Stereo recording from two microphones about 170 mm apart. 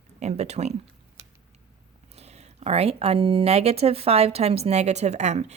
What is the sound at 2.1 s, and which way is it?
Speech, 40° right (ahead or behind).